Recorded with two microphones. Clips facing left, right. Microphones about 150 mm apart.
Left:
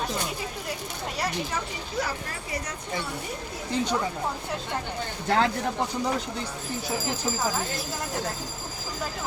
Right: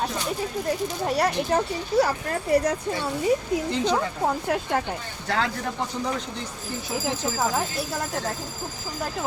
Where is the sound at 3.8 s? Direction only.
75° right (ahead or behind).